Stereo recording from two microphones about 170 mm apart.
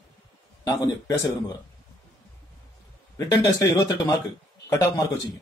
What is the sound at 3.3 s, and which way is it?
A man's voice, 20° left (ahead or behind).